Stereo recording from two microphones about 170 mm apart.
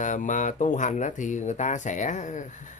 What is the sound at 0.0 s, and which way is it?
Speech, 50° left (ahead or behind).